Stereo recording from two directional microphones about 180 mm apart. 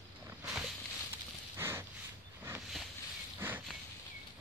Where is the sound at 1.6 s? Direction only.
15° right (ahead or behind).